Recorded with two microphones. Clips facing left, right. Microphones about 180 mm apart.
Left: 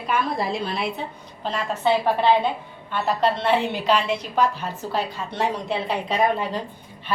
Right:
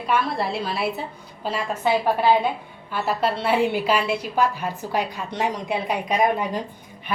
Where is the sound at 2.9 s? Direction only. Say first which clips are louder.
Left 1 dB; 10° right (ahead or behind).